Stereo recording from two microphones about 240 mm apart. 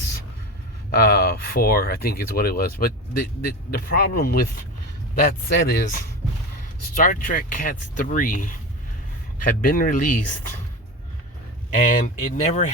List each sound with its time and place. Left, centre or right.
0.9 s speech: left
6.9 s speech: left
9.6 s speech: left
11.8 s speech: left